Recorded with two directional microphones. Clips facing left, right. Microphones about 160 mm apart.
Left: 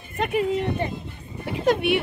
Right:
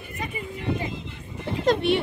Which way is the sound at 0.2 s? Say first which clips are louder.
Left 11 dB; 75° left (ahead or behind).